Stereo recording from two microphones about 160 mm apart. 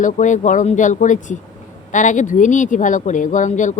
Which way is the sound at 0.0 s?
50° left (ahead or behind).